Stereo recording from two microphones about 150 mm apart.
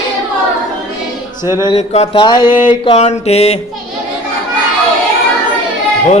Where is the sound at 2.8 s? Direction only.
45° left (ahead or behind).